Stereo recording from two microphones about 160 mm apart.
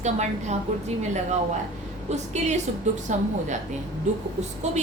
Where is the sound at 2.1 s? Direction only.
45° right (ahead or behind).